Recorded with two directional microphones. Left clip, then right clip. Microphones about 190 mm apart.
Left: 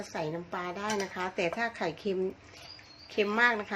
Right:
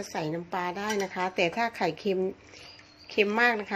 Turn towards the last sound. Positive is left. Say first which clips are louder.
# right 2 dB
turn(degrees=-30)  # may be behind; listen again after turning